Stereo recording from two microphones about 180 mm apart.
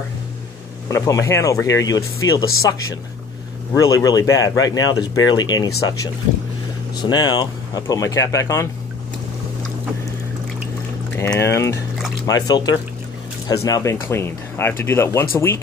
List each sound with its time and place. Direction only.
0.8 s speech: 15° left (ahead or behind)
3.7 s speech: 20° left (ahead or behind)
7.0 s speech: 25° left (ahead or behind)
11.1 s speech: 15° left (ahead or behind)